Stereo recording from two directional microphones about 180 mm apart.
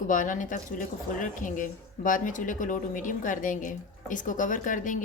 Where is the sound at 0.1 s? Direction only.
45° left (ahead or behind).